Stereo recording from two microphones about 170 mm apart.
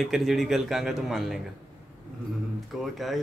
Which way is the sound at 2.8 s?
Centre (ahead or behind).